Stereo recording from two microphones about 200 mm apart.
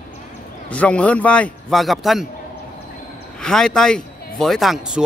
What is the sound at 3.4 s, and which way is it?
Speech, 5° left (ahead or behind).